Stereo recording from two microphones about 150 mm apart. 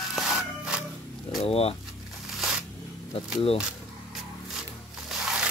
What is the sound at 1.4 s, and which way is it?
Vehicle, 40° left (ahead or behind).